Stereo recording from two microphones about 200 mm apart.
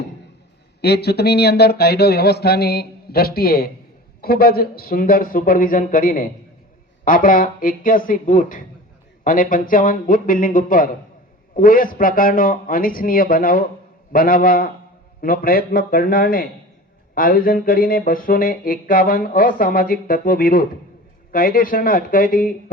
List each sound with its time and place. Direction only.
0.8 s music: 55° left (ahead or behind)